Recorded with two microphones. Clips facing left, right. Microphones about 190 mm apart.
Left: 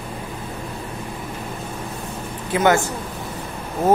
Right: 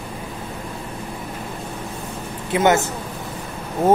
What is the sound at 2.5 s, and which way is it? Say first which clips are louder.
Speech: even; 20° right (ahead or behind).